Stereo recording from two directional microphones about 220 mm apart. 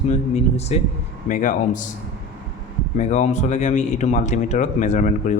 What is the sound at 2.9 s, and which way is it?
Speech, 35° left (ahead or behind).